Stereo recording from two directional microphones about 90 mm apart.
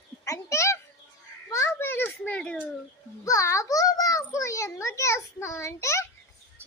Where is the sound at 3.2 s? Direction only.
35° left (ahead or behind).